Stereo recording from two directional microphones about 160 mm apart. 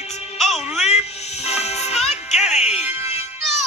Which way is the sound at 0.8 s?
40° left (ahead or behind).